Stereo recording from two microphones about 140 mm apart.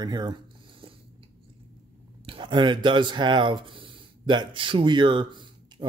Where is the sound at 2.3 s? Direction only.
35° right (ahead or behind).